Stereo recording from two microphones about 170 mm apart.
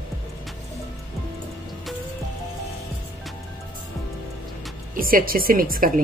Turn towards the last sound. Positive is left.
turn(degrees=-55)  # may be behind; listen again after turning